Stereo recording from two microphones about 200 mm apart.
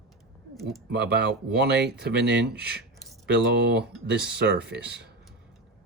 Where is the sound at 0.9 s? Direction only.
55° right (ahead or behind).